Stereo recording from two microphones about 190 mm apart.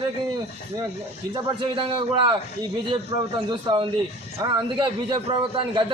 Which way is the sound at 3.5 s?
25° right (ahead or behind).